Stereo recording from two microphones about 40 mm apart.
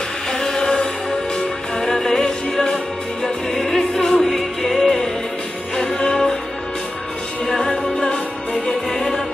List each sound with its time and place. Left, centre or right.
0.3 s music: centre
7.4 s music: centre
7.7 s music: left
8.8 s music: centre